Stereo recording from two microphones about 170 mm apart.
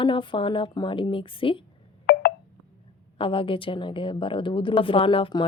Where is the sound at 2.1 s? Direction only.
70° left (ahead or behind).